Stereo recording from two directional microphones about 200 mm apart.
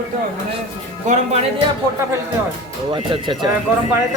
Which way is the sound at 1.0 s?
35° right (ahead or behind).